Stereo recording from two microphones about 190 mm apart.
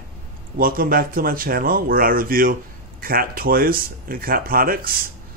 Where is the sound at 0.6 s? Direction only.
50° right (ahead or behind).